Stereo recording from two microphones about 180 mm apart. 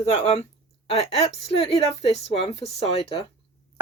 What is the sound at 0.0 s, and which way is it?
Speech, 35° left (ahead or behind).